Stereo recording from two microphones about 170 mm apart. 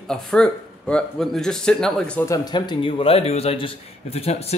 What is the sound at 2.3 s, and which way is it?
A man's voice, 25° left (ahead or behind).